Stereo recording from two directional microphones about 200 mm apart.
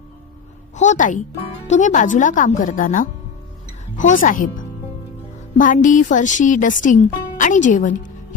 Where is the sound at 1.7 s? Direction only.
40° left (ahead or behind).